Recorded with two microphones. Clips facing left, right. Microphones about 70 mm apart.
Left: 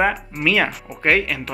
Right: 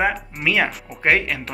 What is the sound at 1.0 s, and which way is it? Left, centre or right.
Speech, right.